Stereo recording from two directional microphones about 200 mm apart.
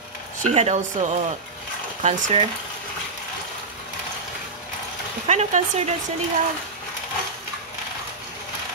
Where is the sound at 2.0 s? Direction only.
35° right (ahead or behind).